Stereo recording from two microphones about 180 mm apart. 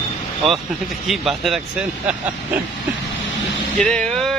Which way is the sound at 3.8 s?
5° left (ahead or behind).